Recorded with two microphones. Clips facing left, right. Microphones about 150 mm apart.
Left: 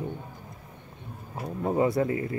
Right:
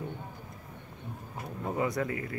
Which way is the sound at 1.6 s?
30° left (ahead or behind).